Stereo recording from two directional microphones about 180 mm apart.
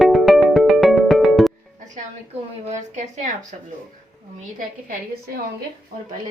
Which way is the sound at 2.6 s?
40° right (ahead or behind).